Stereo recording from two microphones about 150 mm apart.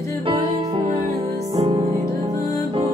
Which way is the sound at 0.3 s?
40° right (ahead or behind).